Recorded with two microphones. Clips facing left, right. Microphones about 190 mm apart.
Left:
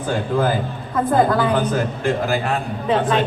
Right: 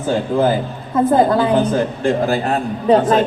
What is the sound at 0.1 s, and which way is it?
A man's voice, 25° right (ahead or behind).